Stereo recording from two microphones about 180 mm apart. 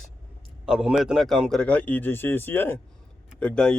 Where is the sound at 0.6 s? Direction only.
5° right (ahead or behind).